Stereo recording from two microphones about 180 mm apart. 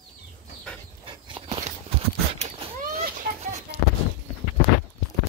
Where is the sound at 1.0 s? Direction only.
25° right (ahead or behind).